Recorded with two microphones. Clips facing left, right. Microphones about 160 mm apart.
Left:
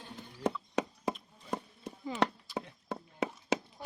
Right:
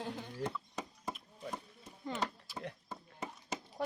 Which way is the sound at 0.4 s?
75° left (ahead or behind).